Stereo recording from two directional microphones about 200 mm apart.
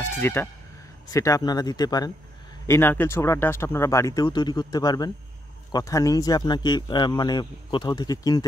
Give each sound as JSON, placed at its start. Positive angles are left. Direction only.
{"t": 0.0, "sound": "a man's voice", "side_deg": 10}